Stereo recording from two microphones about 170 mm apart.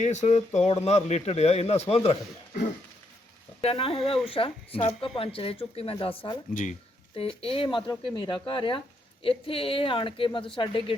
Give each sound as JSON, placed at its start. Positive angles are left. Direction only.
{"t": 0.0, "sound": "speech", "side_deg": 45}
{"t": 3.6, "sound": "speech", "side_deg": 35}
{"t": 6.5, "sound": "speech", "side_deg": 50}
{"t": 7.2, "sound": "speech", "side_deg": 35}